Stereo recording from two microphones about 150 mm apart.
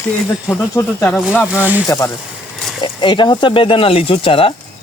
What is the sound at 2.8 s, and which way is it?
Speech, 30° left (ahead or behind).